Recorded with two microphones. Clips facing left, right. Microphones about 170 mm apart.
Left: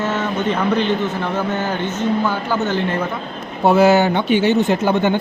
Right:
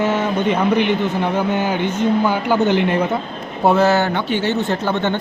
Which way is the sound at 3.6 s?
5° left (ahead or behind).